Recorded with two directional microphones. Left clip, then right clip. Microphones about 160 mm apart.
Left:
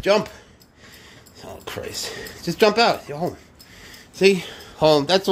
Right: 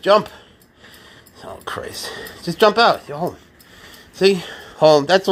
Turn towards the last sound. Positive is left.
turn(degrees=5)  # may be behind; listen again after turning